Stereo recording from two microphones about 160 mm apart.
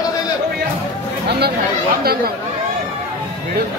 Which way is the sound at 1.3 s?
90° right.